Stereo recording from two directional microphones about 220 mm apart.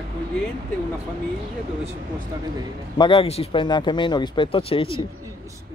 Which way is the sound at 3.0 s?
25° left (ahead or behind).